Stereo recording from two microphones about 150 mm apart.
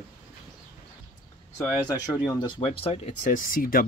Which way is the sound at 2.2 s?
35° left (ahead or behind).